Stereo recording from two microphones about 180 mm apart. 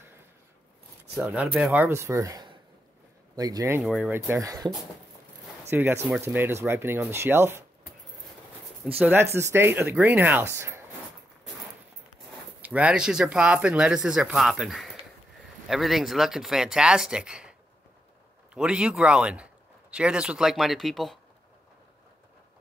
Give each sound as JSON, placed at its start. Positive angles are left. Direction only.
{"t": 1.1, "sound": "speech", "side_deg": -5}
{"t": 3.8, "sound": "speech", "side_deg": -5}
{"t": 5.7, "sound": "speech", "side_deg": -10}
{"t": 8.8, "sound": "speech", "side_deg": -10}
{"t": 12.6, "sound": "speech", "side_deg": -5}